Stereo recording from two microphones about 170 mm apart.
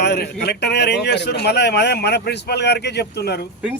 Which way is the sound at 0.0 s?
75° left (ahead or behind).